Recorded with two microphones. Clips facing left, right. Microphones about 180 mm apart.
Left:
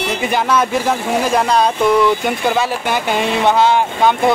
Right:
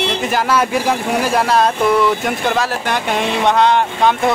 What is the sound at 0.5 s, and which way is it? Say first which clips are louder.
Speech: even; 5° right (ahead or behind).